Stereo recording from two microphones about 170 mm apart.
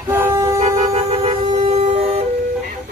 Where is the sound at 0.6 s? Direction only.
40° right (ahead or behind).